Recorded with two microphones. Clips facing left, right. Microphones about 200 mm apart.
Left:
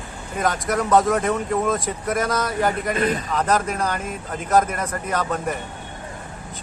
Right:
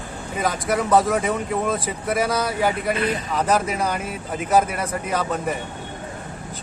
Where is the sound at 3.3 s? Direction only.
5° right (ahead or behind).